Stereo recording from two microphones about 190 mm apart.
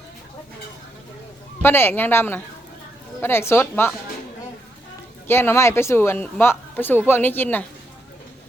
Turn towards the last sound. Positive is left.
turn(degrees=10)  # may be behind; listen again after turning